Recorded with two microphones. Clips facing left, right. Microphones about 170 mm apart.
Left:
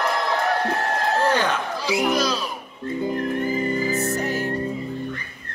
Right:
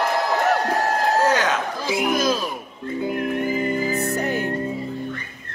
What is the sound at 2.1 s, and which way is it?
Music, 50° right (ahead or behind).